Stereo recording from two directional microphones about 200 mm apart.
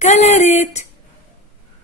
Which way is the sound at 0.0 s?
35° left (ahead or behind).